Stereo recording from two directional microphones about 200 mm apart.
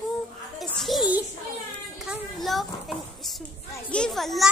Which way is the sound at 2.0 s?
Centre (ahead or behind).